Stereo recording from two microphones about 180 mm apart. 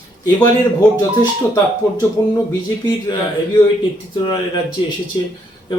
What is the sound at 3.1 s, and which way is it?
Speech, 25° left (ahead or behind).